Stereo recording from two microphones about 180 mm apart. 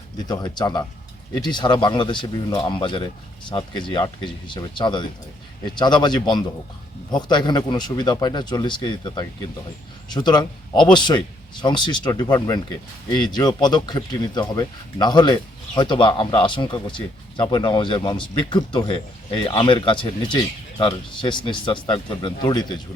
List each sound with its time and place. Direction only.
0.3 s speech: 25° left (ahead or behind)
13.3 s speech: 25° left (ahead or behind)